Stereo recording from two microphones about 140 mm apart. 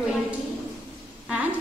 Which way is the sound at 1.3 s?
10° right (ahead or behind).